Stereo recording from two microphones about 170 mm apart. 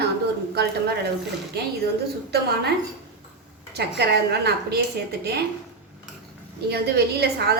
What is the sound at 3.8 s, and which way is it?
A woman's voice, 75° right (ahead or behind).